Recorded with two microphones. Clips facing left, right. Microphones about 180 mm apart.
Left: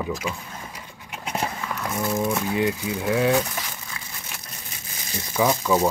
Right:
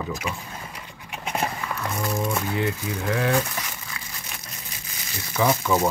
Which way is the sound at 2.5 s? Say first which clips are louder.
Left 3 dB; 15° left (ahead or behind).